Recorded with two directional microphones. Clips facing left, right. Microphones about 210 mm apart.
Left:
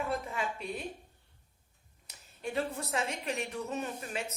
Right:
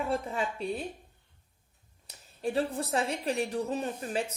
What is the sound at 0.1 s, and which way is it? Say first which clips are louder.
Speech: right 4 dB; 30° right (ahead or behind).